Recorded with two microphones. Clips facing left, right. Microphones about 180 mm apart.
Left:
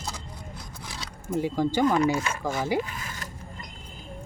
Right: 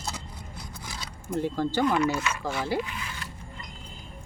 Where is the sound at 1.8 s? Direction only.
40° left (ahead or behind).